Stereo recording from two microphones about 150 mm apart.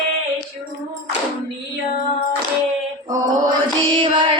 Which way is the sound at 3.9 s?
35° right (ahead or behind).